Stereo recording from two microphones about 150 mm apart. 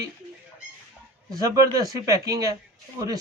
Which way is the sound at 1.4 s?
25° right (ahead or behind).